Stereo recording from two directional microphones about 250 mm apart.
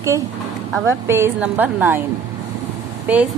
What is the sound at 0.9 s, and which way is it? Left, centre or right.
A woman's voice, centre.